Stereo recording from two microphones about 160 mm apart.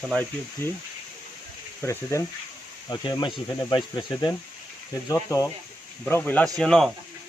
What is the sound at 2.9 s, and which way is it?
Speech, 30° left (ahead or behind).